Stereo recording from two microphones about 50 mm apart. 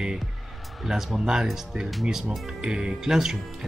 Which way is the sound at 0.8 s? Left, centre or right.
Centre.